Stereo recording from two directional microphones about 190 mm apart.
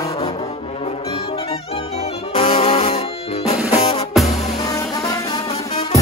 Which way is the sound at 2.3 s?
35° left (ahead or behind).